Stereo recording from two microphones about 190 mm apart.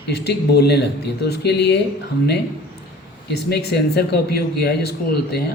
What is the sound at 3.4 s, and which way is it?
A man's voice, 60° left (ahead or behind).